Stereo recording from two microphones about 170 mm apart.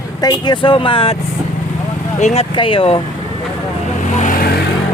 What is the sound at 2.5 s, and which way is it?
Speech, 30° left (ahead or behind).